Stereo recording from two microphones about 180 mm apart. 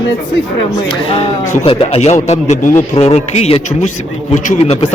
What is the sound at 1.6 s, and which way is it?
Speech, 35° left (ahead or behind).